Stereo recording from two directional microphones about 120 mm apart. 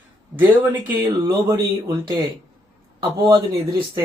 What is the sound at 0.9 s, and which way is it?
Speech, 30° right (ahead or behind).